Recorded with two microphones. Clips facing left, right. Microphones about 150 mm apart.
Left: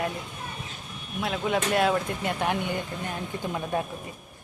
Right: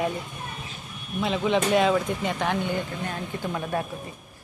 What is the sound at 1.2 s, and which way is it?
Speech, centre (ahead or behind).